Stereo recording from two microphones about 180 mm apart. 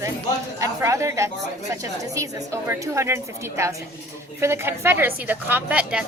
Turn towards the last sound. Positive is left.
turn(degrees=-5)  # may be behind; listen again after turning